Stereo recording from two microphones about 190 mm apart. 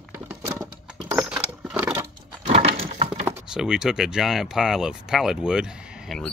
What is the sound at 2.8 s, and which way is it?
Crack, 35° right (ahead or behind).